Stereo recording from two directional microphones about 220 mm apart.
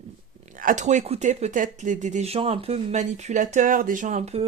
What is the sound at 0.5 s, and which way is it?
Speech, 35° right (ahead or behind).